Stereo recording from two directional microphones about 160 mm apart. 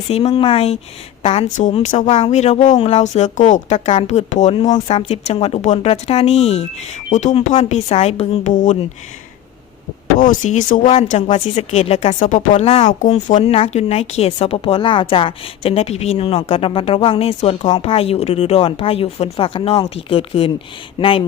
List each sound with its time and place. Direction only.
0.1 s a woman's voice: 35° left (ahead or behind)
1.5 s speech: 50° left (ahead or behind)
10.2 s speech: 50° left (ahead or behind)
11.1 s speech: 45° left (ahead or behind)
12.3 s speech: 55° left (ahead or behind)
12.6 s speech: 40° left (ahead or behind)
12.9 s speech: 50° left (ahead or behind); by 21.2 s 35° left (ahead or behind)